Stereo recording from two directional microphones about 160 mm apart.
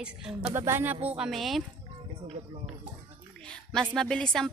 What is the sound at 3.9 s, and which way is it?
Speech, 5° left (ahead or behind).